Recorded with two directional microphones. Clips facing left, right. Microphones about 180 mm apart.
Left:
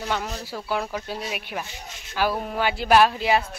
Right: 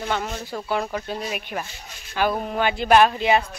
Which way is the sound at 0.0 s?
Centre (ahead or behind).